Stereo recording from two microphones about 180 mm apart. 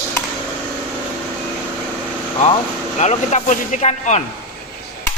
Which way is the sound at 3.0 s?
40° left (ahead or behind).